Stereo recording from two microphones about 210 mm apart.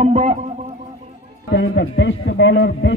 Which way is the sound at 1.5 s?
55° left (ahead or behind).